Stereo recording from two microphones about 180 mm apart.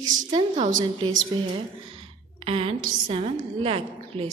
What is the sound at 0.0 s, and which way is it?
Speech, 45° right (ahead or behind).